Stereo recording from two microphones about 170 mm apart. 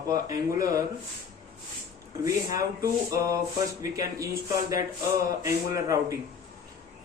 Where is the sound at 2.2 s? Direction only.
20° right (ahead or behind).